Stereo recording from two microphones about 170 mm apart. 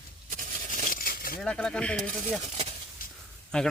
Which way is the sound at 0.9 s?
60° left (ahead or behind).